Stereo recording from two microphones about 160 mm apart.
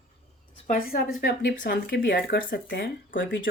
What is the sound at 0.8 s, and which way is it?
Speech, 65° left (ahead or behind).